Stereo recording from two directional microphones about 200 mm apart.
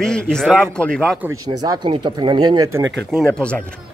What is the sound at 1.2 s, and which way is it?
Speech, 20° right (ahead or behind).